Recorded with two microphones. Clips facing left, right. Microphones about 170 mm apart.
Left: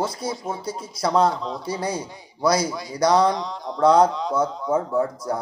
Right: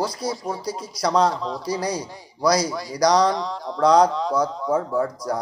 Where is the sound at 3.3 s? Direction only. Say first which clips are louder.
Right 1 dB; centre (ahead or behind).